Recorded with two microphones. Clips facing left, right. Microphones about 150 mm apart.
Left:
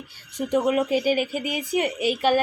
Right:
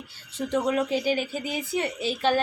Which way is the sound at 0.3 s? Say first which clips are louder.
Left 3 dB; 15° left (ahead or behind).